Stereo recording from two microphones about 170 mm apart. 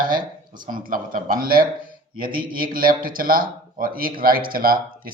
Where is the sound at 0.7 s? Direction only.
55° right (ahead or behind).